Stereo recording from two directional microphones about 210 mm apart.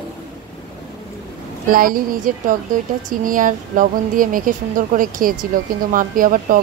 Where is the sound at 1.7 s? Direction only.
40° right (ahead or behind).